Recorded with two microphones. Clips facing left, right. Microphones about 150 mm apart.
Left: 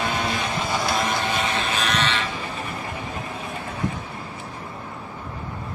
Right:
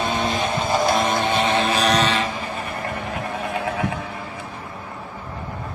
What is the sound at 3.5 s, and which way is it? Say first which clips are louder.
Neigh: right 4 dB; 80° right.